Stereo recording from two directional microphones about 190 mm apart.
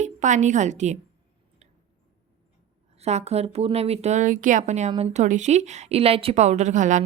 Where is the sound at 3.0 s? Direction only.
35° right (ahead or behind).